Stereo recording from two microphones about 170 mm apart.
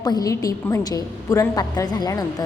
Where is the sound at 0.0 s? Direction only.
20° left (ahead or behind).